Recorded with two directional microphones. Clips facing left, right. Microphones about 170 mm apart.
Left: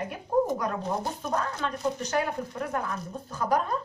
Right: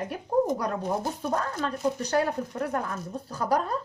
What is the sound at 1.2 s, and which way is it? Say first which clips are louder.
Speech: right 1 dB; 35° right (ahead or behind).